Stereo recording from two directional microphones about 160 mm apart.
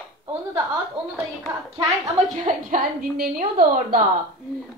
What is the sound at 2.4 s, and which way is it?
A woman's voice, 65° right (ahead or behind).